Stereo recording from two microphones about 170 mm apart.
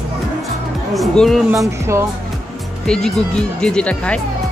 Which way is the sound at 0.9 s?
Centre (ahead or behind).